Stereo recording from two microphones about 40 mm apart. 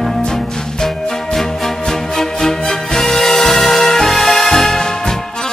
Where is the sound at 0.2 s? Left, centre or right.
Centre.